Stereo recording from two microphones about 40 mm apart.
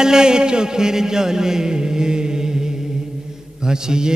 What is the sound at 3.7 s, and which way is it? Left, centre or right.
Music, centre.